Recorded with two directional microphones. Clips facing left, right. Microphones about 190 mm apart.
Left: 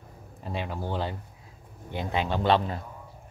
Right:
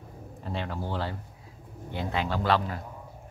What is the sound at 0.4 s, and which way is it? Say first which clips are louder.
A man's voice: left 1 dB; 15° left (ahead or behind).